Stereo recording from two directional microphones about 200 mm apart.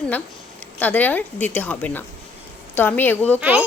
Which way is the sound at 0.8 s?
10° left (ahead or behind).